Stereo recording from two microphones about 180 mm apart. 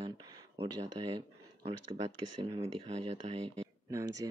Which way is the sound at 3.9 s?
20° right (ahead or behind).